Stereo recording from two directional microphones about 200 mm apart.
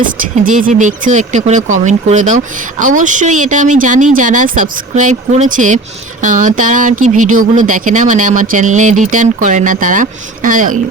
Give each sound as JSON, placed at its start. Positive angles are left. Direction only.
{"t": 0.0, "sound": "speech", "side_deg": -40}